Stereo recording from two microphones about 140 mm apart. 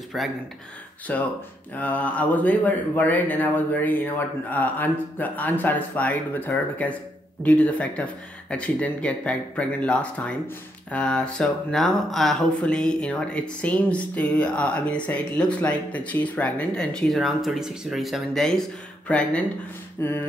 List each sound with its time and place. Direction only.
0.1 s speech: centre (ahead or behind)
1.1 s speech: 10° left (ahead or behind)